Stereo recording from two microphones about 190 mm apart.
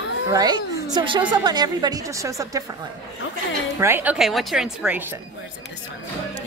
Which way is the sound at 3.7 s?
10° right (ahead or behind).